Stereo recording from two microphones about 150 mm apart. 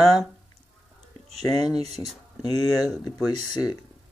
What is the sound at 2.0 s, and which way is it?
Speech, 15° right (ahead or behind).